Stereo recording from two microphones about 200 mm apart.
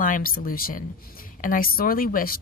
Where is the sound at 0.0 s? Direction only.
45° left (ahead or behind).